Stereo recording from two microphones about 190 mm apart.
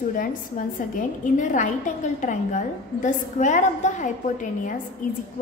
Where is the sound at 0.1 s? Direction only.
45° left (ahead or behind).